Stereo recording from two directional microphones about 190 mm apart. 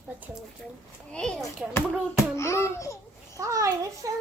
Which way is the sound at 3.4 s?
15° right (ahead or behind).